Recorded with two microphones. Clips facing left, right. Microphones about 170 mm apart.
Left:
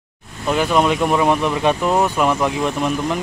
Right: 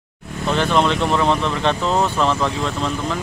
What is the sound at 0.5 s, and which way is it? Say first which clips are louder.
Speech: left 1 dB; 10° left (ahead or behind).